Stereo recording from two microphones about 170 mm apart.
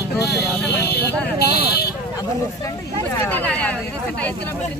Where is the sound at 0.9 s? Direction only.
70° left (ahead or behind).